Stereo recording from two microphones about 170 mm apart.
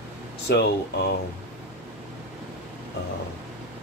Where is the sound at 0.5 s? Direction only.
70° left (ahead or behind).